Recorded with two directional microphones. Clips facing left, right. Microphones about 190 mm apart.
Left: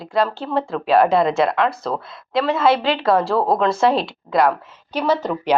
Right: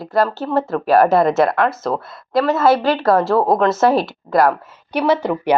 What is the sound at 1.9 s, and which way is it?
Speech, 50° right (ahead or behind).